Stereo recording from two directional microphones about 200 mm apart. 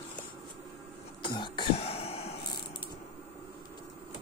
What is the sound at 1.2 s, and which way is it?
Throat clearing, 20° left (ahead or behind).